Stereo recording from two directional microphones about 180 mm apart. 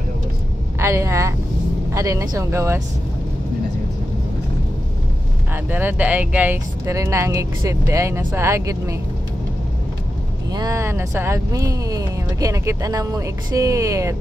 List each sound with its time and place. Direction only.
0.7 s speech: 15° right (ahead or behind)
5.5 s speech: 10° right (ahead or behind)
10.5 s speech: 20° right (ahead or behind)